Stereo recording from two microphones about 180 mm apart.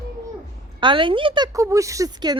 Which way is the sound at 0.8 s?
30° right (ahead or behind).